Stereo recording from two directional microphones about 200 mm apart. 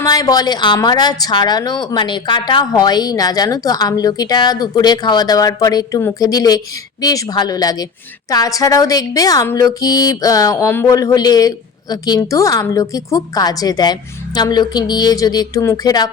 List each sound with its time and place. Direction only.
0.0 s a woman's voice: 20° left (ahead or behind)